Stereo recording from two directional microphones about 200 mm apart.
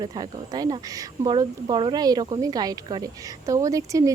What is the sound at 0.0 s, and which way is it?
Speech, 20° right (ahead or behind).